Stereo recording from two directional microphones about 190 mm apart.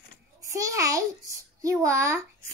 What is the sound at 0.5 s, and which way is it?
A child's voice, 15° right (ahead or behind).